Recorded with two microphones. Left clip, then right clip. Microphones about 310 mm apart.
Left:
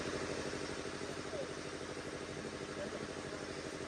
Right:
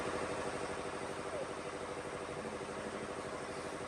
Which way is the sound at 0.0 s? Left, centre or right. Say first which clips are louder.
Right 2 dB; centre.